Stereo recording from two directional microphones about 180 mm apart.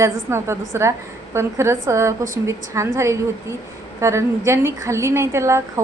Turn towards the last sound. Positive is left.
turn(degrees=-15)  # may be behind; listen again after turning